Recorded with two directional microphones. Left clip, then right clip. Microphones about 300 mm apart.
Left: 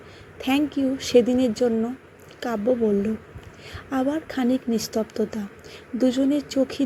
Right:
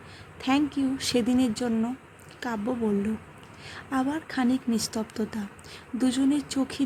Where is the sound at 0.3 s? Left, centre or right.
Centre.